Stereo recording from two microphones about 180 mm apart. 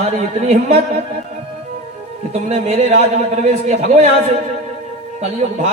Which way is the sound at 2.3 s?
40° right (ahead or behind).